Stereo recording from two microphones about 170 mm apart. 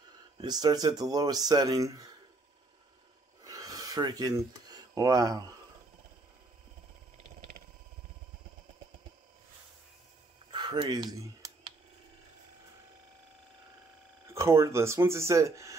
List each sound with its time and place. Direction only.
0.4 s speech: 25° right (ahead or behind)
3.4 s a sound: 20° right (ahead or behind)
10.5 s computer keyboard: 25° right (ahead or behind)
14.3 s speech: 15° right (ahead or behind)